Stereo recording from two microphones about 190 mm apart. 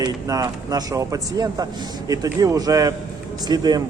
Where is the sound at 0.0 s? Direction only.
20° right (ahead or behind).